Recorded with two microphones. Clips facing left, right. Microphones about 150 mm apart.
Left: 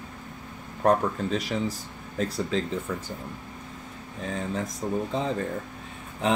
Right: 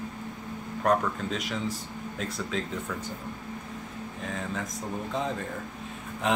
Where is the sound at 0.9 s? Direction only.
35° left (ahead or behind).